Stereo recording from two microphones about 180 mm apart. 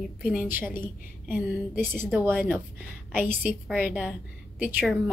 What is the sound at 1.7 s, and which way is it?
A woman's voice, 10° right (ahead or behind).